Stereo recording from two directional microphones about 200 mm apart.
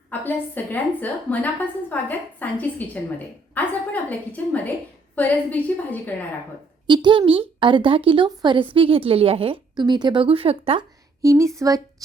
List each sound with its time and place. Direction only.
0.1 s a woman's voice: 10° left (ahead or behind)
6.8 s speech: 25° right (ahead or behind)
11.2 s speech: 15° right (ahead or behind)